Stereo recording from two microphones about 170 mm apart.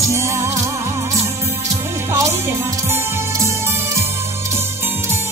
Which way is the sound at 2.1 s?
20° right (ahead or behind).